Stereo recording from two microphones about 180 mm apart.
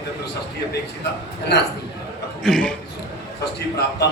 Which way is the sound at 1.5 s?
65° left (ahead or behind).